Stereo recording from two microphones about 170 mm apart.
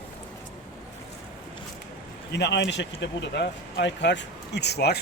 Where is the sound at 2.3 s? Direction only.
85° left.